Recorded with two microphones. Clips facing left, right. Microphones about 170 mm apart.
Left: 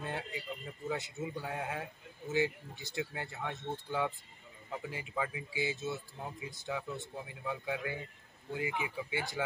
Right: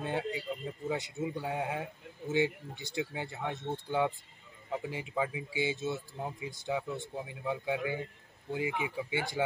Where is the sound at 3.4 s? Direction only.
15° right (ahead or behind).